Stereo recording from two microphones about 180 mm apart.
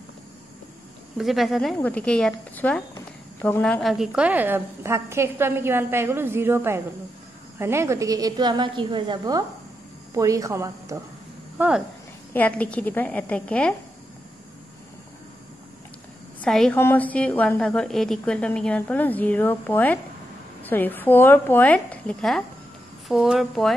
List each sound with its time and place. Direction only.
1.1 s a woman's voice: centre (ahead or behind)
12.4 s a woman's voice: 5° left (ahead or behind)
16.3 s a woman's voice: 5° left (ahead or behind)